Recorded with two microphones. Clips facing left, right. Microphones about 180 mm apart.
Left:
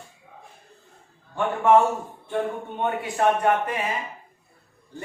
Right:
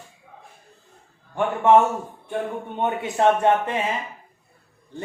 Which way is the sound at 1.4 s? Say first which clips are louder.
Right 2 dB; 20° right (ahead or behind).